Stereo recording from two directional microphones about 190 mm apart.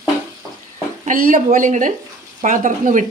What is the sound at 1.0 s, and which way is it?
A woman's voice, 45° right (ahead or behind).